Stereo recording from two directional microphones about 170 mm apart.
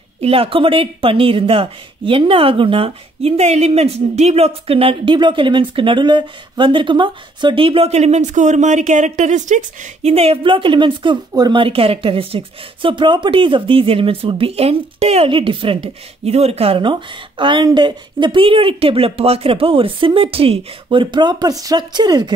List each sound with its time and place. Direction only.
0.2 s speech: 35° right (ahead or behind)